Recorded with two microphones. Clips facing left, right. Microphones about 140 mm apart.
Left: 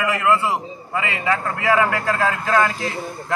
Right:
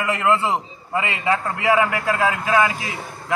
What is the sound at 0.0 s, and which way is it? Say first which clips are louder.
A man's voice: left 1 dB; 30° right (ahead or behind).